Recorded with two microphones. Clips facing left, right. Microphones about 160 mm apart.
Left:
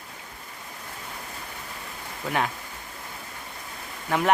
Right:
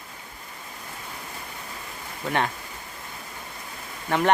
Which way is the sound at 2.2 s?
5° left (ahead or behind).